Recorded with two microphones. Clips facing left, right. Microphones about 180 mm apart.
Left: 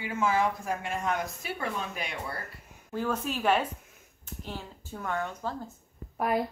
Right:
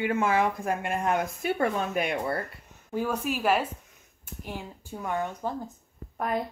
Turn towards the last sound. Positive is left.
turn(degrees=5)  # may be behind; listen again after turning